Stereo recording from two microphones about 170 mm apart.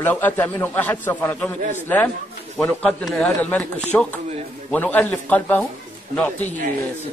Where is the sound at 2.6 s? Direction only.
5° left (ahead or behind).